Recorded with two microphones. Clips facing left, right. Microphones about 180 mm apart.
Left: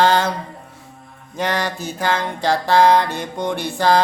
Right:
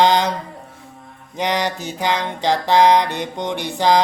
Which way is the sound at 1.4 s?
15° right (ahead or behind).